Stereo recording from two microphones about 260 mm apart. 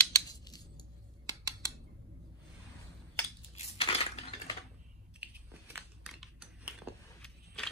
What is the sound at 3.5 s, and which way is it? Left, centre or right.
Dishes, left.